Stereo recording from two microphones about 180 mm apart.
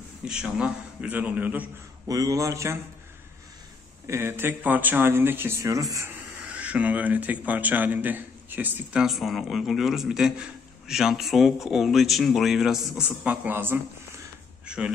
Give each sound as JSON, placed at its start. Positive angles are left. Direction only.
{"t": 0.2, "sound": "speech", "side_deg": -5}
{"t": 4.1, "sound": "speech", "side_deg": -15}